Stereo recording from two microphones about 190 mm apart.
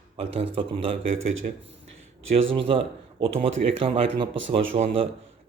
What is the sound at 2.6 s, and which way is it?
A man's voice, 30° right (ahead or behind).